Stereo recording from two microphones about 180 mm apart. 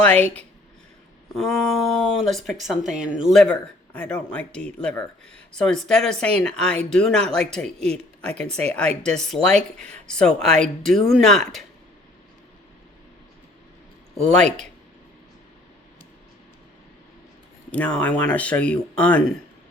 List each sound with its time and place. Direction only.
0.0 s speech: 5° left (ahead or behind)
14.3 s speech: 5° left (ahead or behind)
17.7 s speech: 5° left (ahead or behind)